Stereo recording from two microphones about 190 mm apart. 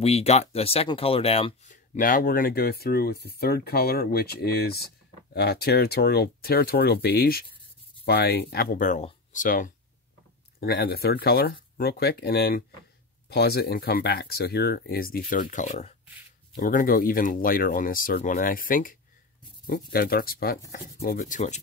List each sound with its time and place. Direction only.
0.0 s speech: 35° left (ahead or behind)
10.6 s speech: 55° left (ahead or behind)